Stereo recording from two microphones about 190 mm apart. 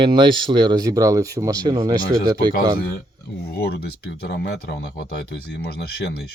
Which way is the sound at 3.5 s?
55° left (ahead or behind).